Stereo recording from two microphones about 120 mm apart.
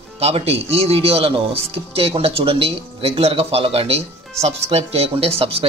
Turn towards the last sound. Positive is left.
turn(degrees=-55)  # may be behind; listen again after turning